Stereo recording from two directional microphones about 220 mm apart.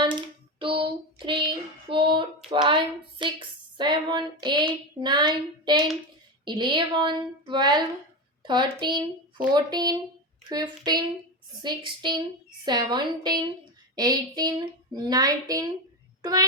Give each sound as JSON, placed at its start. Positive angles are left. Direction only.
{"t": 0.0, "sound": "child singing", "side_deg": -20}
{"t": 2.5, "sound": "a sound", "side_deg": -20}
{"t": 13.9, "sound": "speech", "side_deg": -15}